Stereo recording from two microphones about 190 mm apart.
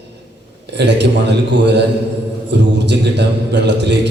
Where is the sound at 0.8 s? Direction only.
65° right (ahead or behind).